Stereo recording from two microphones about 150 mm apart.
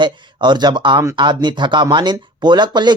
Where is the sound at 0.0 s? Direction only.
30° right (ahead or behind).